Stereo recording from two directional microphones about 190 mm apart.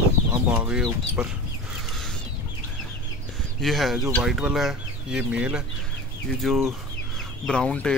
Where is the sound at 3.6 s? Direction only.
Centre (ahead or behind).